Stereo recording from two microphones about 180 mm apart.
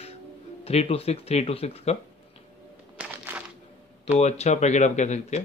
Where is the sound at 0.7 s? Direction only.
35° left (ahead or behind).